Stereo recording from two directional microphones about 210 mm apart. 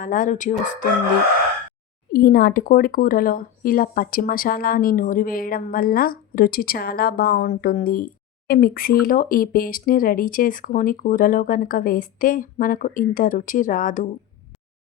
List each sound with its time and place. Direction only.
0.0 s speech: 40° left (ahead or behind)
2.1 s speech: 45° left (ahead or behind)